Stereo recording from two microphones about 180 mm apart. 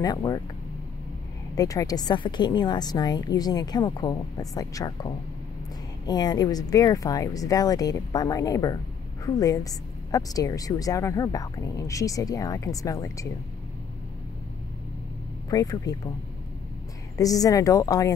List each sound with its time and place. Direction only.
0.0 s a woman's voice: 20° left (ahead or behind)
1.5 s a woman's voice: 20° left (ahead or behind)
6.0 s a woman's voice: 20° left (ahead or behind)
15.5 s a woman's voice: 20° left (ahead or behind)
17.2 s a woman's voice: 20° left (ahead or behind)